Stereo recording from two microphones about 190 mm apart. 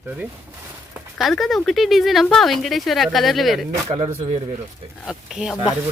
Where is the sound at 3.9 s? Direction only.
35° right (ahead or behind).